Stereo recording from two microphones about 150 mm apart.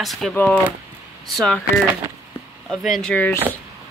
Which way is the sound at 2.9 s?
5° left (ahead or behind).